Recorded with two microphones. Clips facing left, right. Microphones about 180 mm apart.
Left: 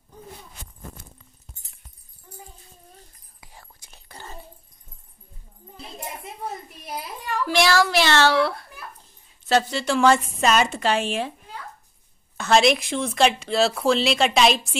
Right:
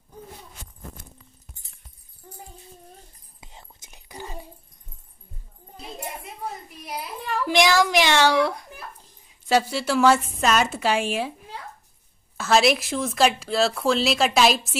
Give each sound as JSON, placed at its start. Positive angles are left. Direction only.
{"t": 3.3, "sound": "whispering", "side_deg": -20}
{"t": 7.4, "sound": "a woman's voice", "side_deg": -15}
{"t": 12.4, "sound": "speech", "side_deg": -5}